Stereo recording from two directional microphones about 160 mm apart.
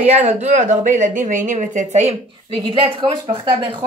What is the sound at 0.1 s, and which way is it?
Speech, 45° right (ahead or behind).